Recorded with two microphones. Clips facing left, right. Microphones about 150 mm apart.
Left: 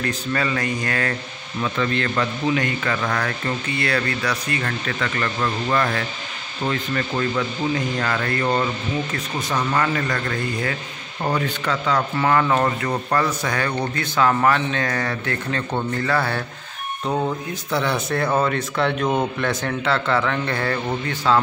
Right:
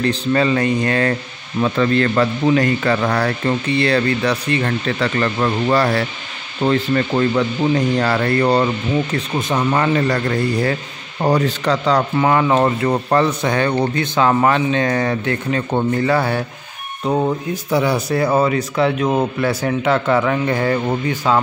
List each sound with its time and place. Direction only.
0.0 s speech: 30° right (ahead or behind)
1.6 s a man's voice: 40° right (ahead or behind)
9.1 s a man's voice: 25° right (ahead or behind)
12.2 s a man's voice: 20° right (ahead or behind)